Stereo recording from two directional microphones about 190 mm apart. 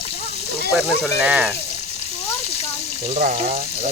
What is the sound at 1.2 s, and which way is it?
Speech, 5° right (ahead or behind).